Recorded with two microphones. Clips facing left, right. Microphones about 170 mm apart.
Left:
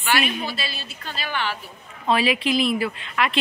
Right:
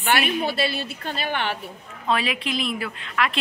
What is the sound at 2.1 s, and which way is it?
Speech, 5° left (ahead or behind).